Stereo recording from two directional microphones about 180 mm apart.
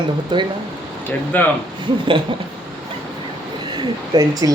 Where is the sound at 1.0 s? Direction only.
10° left (ahead or behind).